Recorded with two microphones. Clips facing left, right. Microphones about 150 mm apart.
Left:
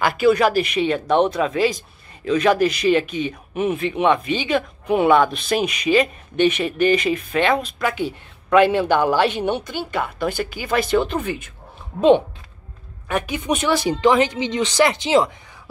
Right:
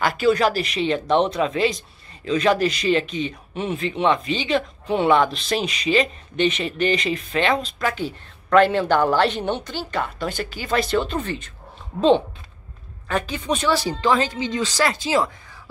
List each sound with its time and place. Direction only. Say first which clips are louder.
0.0 s speech: left 2 dB; 10° left (ahead or behind)
13.1 s speech: left 2 dB; 15° left (ahead or behind)